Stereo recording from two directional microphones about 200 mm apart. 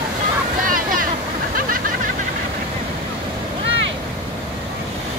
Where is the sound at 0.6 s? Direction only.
45° right (ahead or behind).